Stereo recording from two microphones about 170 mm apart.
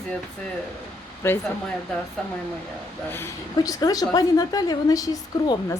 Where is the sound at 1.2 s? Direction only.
15° left (ahead or behind).